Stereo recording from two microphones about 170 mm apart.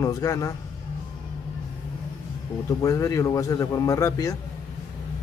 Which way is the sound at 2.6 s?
20° left (ahead or behind).